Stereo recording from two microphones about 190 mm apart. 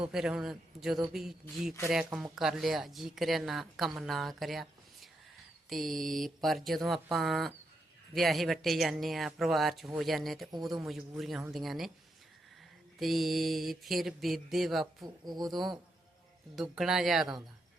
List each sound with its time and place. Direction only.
0.0 s speech: 5° right (ahead or behind)
13.0 s speech: centre (ahead or behind)
15.0 s speech: 20° right (ahead or behind)
16.6 s speech: centre (ahead or behind)